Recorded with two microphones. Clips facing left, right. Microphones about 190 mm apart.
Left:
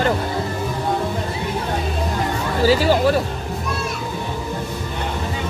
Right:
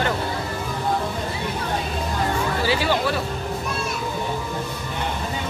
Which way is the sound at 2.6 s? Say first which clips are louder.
Left 9 dB; 40° left (ahead or behind).